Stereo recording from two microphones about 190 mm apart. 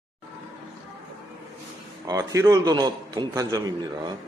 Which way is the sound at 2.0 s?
15° right (ahead or behind).